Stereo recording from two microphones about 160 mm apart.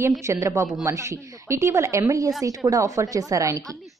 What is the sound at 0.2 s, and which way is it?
A woman's voice, 20° right (ahead or behind).